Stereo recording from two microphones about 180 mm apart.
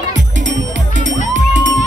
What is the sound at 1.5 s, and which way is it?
Music, 90° right.